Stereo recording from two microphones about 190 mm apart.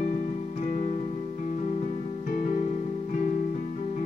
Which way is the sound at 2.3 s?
45° left (ahead or behind).